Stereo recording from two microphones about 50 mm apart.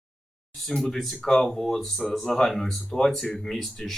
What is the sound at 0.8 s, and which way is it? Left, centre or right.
Speech, centre.